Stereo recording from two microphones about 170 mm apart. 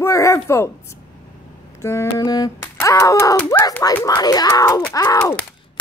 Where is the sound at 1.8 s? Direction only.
15° left (ahead or behind).